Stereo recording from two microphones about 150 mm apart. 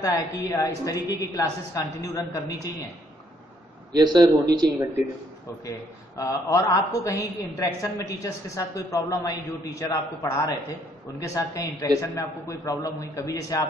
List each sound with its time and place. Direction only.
0.0 s a woman's voice: 20° left (ahead or behind)
4.0 s speech: 30° right (ahead or behind)
6.1 s a woman's voice: 20° left (ahead or behind)